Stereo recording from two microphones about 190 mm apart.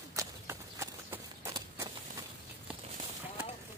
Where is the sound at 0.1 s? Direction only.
15° right (ahead or behind).